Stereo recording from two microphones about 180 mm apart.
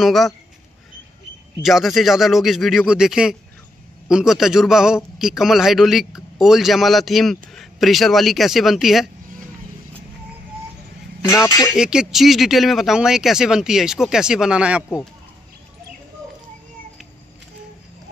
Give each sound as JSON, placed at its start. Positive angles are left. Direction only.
{"t": 0.0, "sound": "a man's voice", "side_deg": 0}
{"t": 1.6, "sound": "a man's voice", "side_deg": 0}
{"t": 11.2, "sound": "speech", "side_deg": 15}
{"t": 11.7, "sound": "a man's voice", "side_deg": -5}